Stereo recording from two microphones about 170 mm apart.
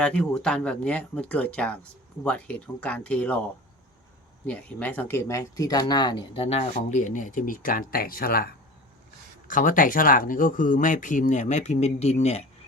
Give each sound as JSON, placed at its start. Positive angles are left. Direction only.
{"t": 0.0, "sound": "speech", "side_deg": 5}
{"t": 4.4, "sound": "speech", "side_deg": 10}